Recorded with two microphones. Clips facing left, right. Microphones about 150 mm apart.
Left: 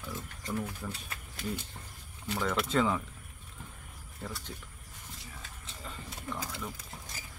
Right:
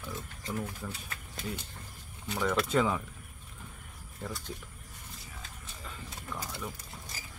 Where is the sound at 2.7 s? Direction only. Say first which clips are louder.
Left 1 dB; 15° right (ahead or behind).